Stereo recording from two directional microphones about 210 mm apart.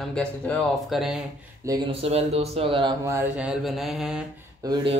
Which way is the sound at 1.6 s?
20° right (ahead or behind).